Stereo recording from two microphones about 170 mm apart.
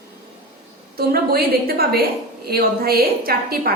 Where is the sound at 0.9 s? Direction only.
65° right (ahead or behind).